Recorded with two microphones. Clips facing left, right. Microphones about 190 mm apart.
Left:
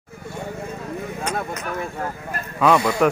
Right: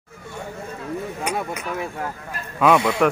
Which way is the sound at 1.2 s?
10° right (ahead or behind).